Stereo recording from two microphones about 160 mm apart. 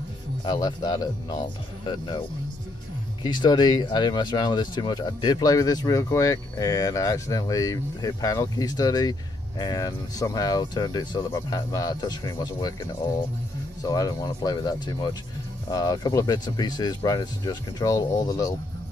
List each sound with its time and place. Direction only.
0.4 s speech: 25° left (ahead or behind)
3.3 s speech: 25° left (ahead or behind)
13.8 s speech: 25° left (ahead or behind)